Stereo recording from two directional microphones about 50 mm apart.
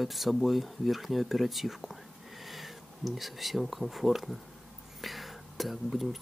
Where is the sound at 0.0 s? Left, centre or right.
Centre.